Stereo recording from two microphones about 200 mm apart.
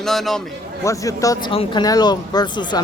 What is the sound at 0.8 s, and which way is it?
Speech, 15° left (ahead or behind).